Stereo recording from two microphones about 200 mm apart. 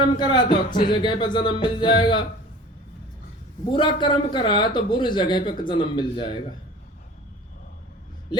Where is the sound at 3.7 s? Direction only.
25° left (ahead or behind).